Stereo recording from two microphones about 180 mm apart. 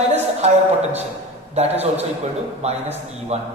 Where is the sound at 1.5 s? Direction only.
35° right (ahead or behind).